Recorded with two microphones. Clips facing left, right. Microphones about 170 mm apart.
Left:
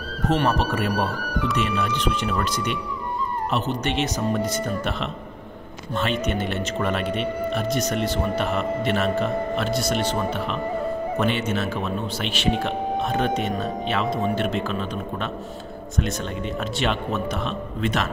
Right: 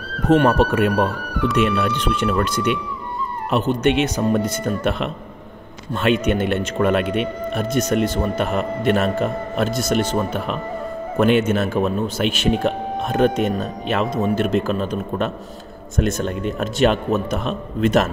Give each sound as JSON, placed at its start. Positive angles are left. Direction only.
{"t": 0.3, "sound": "speech", "side_deg": -55}